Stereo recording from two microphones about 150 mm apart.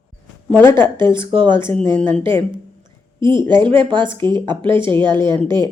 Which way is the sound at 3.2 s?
30° right (ahead or behind).